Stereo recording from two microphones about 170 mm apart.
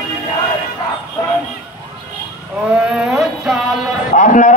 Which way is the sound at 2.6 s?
5° right (ahead or behind).